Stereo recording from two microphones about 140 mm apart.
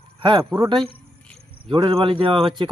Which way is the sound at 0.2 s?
35° right (ahead or behind).